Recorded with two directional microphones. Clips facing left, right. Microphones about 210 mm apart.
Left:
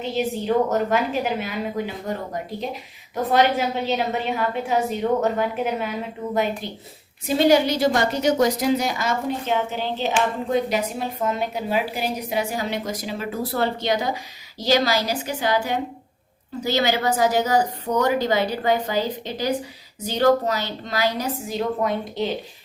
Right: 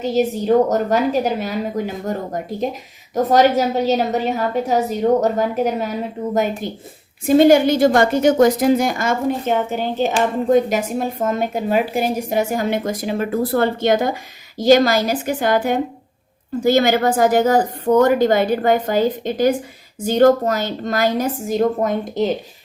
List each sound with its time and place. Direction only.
0.0 s a woman's voice: 40° right (ahead or behind)